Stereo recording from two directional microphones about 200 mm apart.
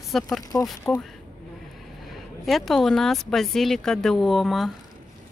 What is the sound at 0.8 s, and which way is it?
Speech, 15° left (ahead or behind).